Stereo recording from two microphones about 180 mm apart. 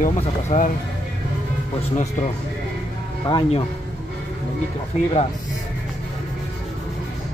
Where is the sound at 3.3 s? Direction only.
30° left (ahead or behind).